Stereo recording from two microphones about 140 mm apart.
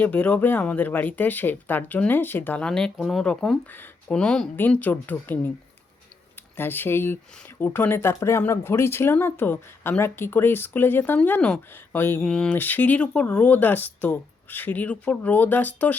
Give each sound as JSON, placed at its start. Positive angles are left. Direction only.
{"t": 0.0, "sound": "speech", "side_deg": 10}
{"t": 6.6, "sound": "speech", "side_deg": 15}